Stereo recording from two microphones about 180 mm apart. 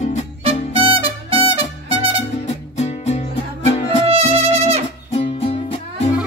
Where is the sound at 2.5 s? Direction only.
35° left (ahead or behind).